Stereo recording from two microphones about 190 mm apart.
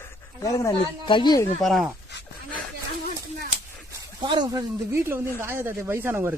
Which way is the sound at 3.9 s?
25° right (ahead or behind).